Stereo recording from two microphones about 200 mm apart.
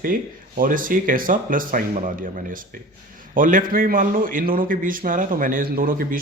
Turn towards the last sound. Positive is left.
turn(degrees=-45)  # may be behind; listen again after turning